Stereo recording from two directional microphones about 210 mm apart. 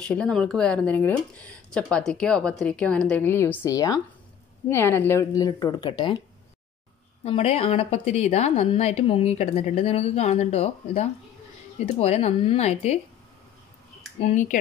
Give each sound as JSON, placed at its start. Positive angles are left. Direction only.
{"t": 0.0, "sound": "a woman's voice", "side_deg": 5}
{"t": 7.2, "sound": "a woman's voice", "side_deg": 30}
{"t": 14.2, "sound": "speech", "side_deg": 35}